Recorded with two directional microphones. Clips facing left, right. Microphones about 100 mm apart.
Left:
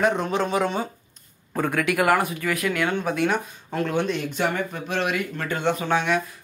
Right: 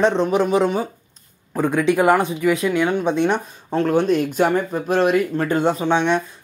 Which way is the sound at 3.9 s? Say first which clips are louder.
Right 9 dB; 40° right (ahead or behind).